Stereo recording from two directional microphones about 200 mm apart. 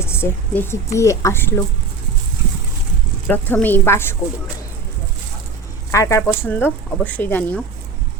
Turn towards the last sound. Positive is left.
turn(degrees=5)  # may be behind; listen again after turning